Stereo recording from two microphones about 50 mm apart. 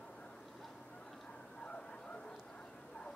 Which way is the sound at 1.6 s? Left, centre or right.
Left.